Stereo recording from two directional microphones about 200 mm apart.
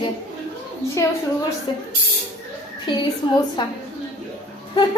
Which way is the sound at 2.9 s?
25° left (ahead or behind).